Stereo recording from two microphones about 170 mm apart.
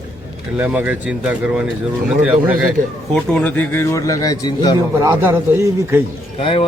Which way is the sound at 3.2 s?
5° left (ahead or behind).